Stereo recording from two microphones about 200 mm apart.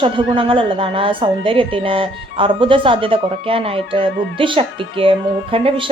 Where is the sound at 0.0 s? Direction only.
25° right (ahead or behind).